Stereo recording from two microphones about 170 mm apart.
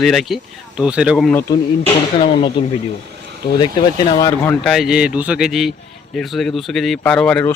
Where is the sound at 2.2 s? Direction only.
35° left (ahead or behind).